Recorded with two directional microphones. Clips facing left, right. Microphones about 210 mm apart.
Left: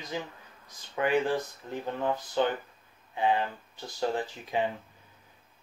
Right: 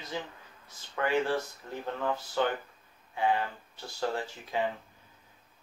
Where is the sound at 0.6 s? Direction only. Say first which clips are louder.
Left 3 dB; 15° left (ahead or behind).